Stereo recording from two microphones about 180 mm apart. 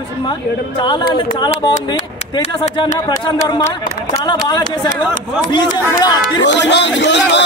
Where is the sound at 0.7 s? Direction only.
25° left (ahead or behind).